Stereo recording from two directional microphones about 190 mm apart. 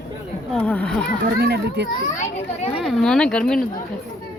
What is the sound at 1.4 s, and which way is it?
Speech, 60° right (ahead or behind).